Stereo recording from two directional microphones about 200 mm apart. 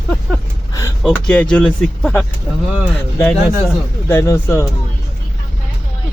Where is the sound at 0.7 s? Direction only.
15° left (ahead or behind).